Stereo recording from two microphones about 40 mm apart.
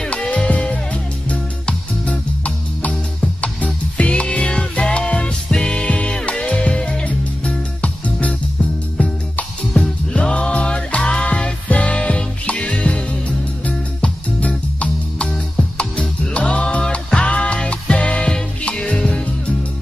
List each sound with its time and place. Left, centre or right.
0.1 s music: left
7.1 s music: left
13.7 s music: left
14.5 s music: left